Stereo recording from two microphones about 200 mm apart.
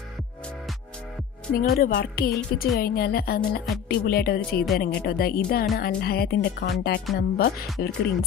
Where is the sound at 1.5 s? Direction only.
45° left (ahead or behind).